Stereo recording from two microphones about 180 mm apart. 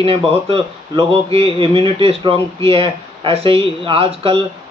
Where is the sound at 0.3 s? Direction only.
30° right (ahead or behind).